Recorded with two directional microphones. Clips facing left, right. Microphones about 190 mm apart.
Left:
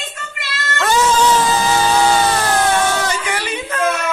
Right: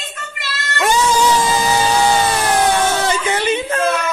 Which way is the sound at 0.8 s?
10° right (ahead or behind).